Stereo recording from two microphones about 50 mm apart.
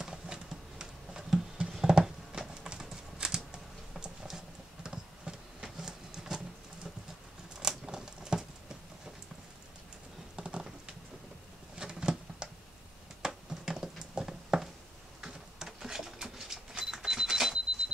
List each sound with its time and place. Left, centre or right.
0.0 s computer keyboard: centre
2.6 s typing: centre
4.8 s a sound: centre
7.6 s patter: centre
10.3 s a sound: centre
15.2 s patter: centre
16.9 s cash register: centre